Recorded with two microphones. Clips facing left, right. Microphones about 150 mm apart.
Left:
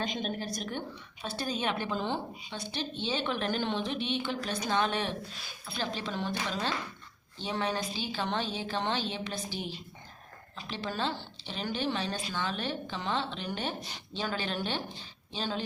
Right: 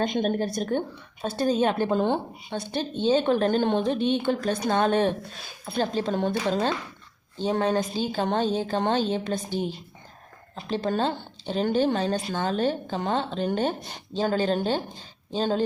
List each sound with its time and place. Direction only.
0.1 s a woman's voice: 55° right (ahead or behind)